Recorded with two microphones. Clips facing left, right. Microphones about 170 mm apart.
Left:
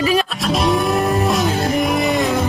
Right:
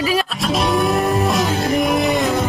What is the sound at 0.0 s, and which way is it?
Music, centre (ahead or behind).